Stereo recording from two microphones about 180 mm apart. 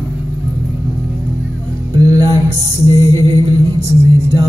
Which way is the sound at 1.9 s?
20° right (ahead or behind).